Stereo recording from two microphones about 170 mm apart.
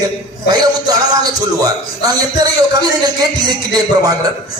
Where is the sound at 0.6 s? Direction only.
25° right (ahead or behind).